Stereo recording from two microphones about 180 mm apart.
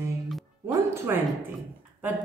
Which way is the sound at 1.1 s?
15° right (ahead or behind).